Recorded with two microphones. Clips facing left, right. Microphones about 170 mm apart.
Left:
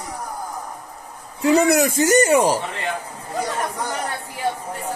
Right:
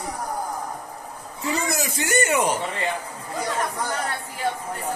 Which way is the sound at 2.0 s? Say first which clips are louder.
Left 4 dB; 40° left (ahead or behind).